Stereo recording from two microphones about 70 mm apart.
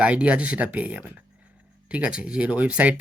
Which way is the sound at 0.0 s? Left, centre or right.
Centre.